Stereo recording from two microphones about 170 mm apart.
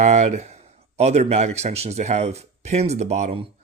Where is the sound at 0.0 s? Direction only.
40° right (ahead or behind).